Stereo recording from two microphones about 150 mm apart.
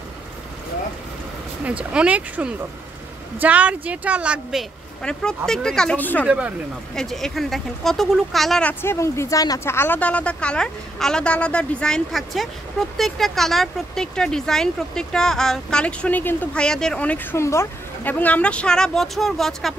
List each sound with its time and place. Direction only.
1.6 s a woman's voice: 10° right (ahead or behind); by 6.2 s 10° left (ahead or behind)
6.2 s speech: 5° right (ahead or behind)
7.0 s a woman's voice: 5° left (ahead or behind)
8.8 s a woman's voice: 20° left (ahead or behind); by 19.7 s centre (ahead or behind)